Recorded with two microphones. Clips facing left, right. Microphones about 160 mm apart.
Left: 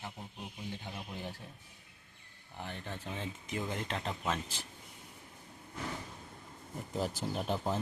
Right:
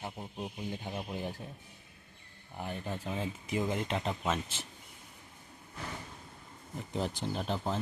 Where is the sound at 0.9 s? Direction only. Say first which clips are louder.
Right 5 dB; 15° right (ahead or behind).